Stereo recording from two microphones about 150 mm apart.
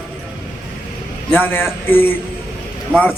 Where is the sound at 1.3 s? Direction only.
15° left (ahead or behind).